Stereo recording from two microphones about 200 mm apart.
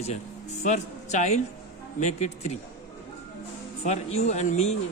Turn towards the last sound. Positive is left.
turn(degrees=35)  # may be behind; listen again after turning